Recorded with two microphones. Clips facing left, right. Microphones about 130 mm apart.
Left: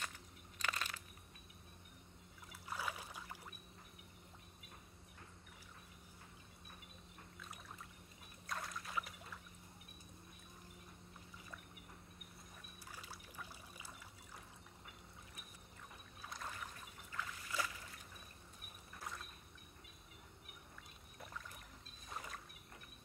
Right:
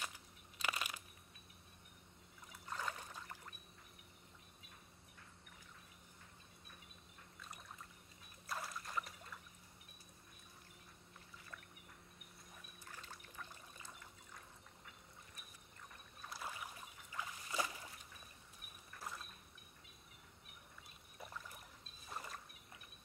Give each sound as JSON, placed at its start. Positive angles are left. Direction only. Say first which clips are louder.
{"t": 0.0, "sound": "crushing", "louder": "even", "side_deg": -10}
{"t": 2.5, "sound": "rowboat", "louder": "even", "side_deg": 10}
{"t": 7.3, "sound": "a sound", "louder": "even", "side_deg": 0}
{"t": 8.5, "sound": "boat", "louder": "even", "side_deg": -5}
{"t": 12.8, "sound": "trickle", "louder": "left 1 dB", "side_deg": 10}
{"t": 16.2, "sound": "rowboat", "louder": "right 1 dB", "side_deg": -5}
{"t": 17.5, "sound": "a sound", "louder": "right 2 dB", "side_deg": -25}
{"t": 18.9, "sound": "boat", "louder": "even", "side_deg": 0}
{"t": 22.0, "sound": "rowboat", "louder": "even", "side_deg": 0}